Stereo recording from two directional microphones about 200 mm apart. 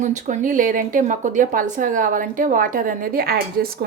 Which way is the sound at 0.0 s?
40° right (ahead or behind).